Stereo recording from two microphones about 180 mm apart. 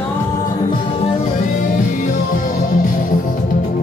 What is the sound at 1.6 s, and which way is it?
Music, 50° left (ahead or behind).